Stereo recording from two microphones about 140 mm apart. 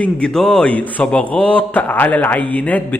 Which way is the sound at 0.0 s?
5° left (ahead or behind).